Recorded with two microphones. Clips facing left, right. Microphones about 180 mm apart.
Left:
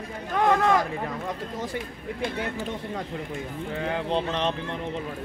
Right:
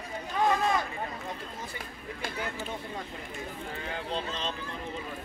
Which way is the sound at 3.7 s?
70° left (ahead or behind).